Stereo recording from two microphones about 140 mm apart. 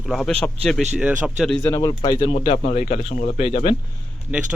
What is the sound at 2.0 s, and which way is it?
Speech, 35° left (ahead or behind).